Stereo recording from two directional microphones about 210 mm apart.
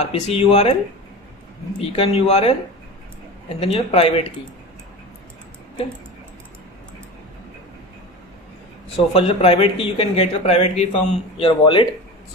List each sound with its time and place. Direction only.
0.0 s speech: 30° left (ahead or behind)
1.8 s speech: 30° left (ahead or behind)
3.5 s speech: 25° left (ahead or behind)
8.9 s speech: 25° left (ahead or behind)